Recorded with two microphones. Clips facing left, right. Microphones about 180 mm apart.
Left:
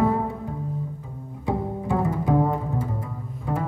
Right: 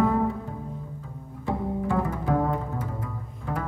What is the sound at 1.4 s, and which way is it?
Bowed string instrument, 20° left (ahead or behind).